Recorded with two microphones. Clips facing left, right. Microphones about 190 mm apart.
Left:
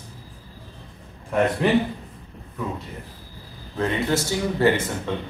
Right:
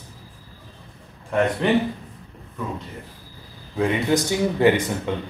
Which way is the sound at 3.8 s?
15° right (ahead or behind).